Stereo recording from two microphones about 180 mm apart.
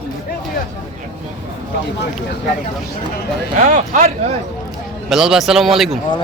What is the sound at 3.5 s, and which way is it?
Speech, 45° right (ahead or behind).